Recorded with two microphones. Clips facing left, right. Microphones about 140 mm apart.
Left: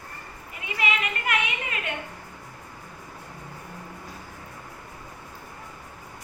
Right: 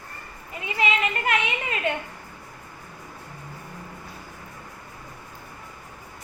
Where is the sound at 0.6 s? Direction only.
25° right (ahead or behind).